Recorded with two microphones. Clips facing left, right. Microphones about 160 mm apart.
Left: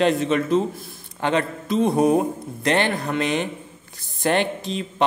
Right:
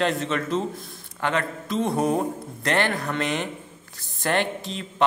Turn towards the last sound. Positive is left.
turn(degrees=20)  # may be behind; listen again after turning